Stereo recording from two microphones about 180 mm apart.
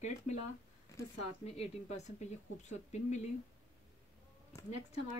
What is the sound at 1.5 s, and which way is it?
Speech, 40° left (ahead or behind).